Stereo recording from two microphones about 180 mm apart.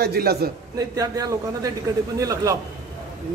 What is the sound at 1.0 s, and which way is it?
A man's voice, 20° right (ahead or behind).